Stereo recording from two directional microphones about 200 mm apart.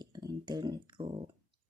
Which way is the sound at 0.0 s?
20° right (ahead or behind).